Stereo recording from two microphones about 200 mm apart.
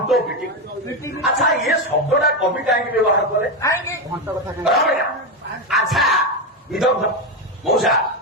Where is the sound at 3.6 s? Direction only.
15° left (ahead or behind).